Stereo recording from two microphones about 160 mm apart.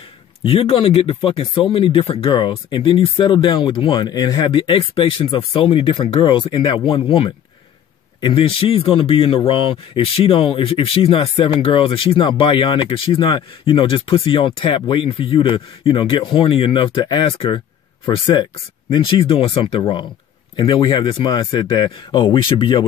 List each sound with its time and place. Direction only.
0.4 s speech: 35° left (ahead or behind)